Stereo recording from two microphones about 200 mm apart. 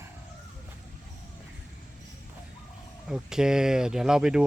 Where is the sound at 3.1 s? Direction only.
5° right (ahead or behind).